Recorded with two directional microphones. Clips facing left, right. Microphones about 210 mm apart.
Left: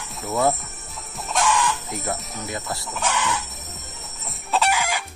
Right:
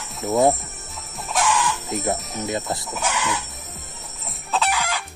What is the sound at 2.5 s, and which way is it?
Speech, 20° right (ahead or behind).